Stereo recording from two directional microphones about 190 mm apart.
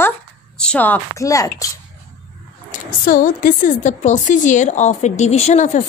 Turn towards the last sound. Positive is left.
turn(degrees=40)  # may be behind; listen again after turning